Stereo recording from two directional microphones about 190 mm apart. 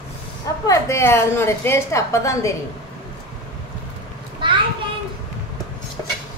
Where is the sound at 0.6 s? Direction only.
15° left (ahead or behind).